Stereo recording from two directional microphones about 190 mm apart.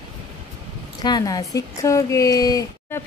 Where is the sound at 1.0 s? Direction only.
20° left (ahead or behind).